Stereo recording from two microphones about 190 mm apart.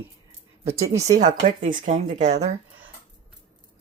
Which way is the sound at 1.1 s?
40° right (ahead or behind).